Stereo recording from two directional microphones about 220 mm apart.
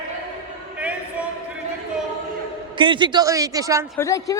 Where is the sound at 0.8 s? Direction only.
5° right (ahead or behind).